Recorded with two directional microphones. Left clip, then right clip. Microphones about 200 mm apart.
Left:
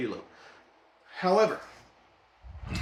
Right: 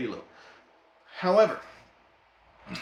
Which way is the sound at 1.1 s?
10° right (ahead or behind).